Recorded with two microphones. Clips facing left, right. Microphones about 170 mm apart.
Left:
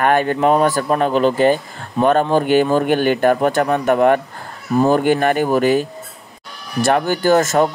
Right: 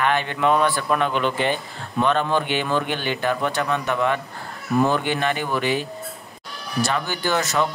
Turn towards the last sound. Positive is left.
turn(degrees=45)  # may be behind; listen again after turning